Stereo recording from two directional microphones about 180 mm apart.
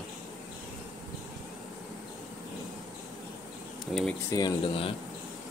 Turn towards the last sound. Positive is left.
turn(degrees=25)  # may be behind; listen again after turning